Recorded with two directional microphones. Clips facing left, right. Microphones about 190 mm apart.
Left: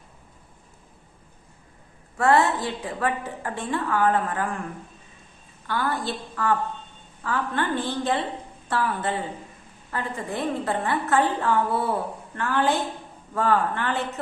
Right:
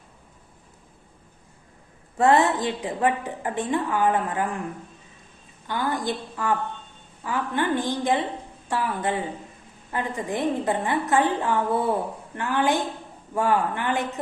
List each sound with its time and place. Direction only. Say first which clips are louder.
2.1 s a woman's voice: right 1 dB; 20° right (ahead or behind)
5.6 s a woman's voice: right 1 dB; 15° right (ahead or behind)